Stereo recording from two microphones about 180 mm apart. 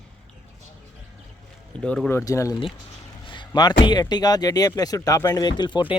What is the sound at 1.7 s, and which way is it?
Speech, 5° left (ahead or behind).